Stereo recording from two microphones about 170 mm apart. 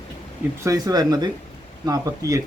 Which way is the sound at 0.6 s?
20° right (ahead or behind).